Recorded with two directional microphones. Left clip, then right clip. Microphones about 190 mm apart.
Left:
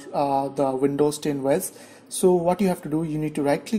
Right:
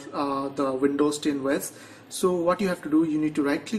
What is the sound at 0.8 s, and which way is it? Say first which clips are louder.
Speech: left 2 dB; 40° left (ahead or behind).